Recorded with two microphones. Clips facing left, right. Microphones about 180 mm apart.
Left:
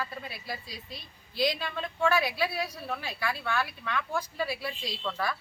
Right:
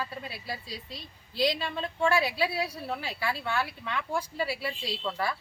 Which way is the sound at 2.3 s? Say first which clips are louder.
Right 2 dB; 10° right (ahead or behind).